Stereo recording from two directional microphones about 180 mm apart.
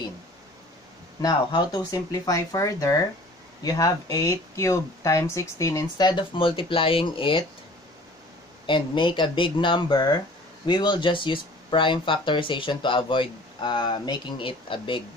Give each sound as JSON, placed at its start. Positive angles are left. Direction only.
{"t": 1.2, "sound": "speech", "side_deg": 20}
{"t": 8.6, "sound": "speech", "side_deg": 25}